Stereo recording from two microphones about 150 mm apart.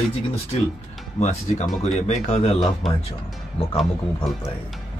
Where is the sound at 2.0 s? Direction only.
45° left (ahead or behind).